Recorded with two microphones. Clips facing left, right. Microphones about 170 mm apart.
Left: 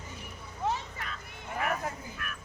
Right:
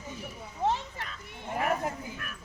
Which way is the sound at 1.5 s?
30° right (ahead or behind).